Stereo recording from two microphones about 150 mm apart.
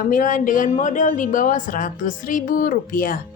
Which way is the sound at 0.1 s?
60° left (ahead or behind).